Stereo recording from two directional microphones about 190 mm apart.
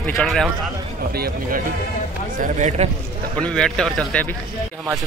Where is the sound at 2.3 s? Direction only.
40° right (ahead or behind).